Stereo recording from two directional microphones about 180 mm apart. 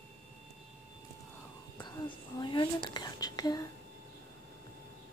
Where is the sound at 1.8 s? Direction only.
20° left (ahead or behind).